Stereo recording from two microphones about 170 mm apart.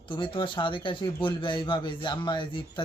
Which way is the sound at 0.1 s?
30° left (ahead or behind).